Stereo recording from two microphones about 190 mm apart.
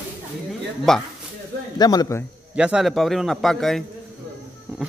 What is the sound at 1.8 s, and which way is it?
Speech, 20° left (ahead or behind).